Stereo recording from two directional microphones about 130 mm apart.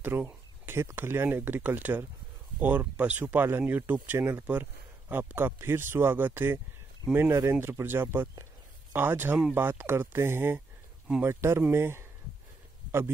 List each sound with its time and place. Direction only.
0.0 s speech: 15° right (ahead or behind)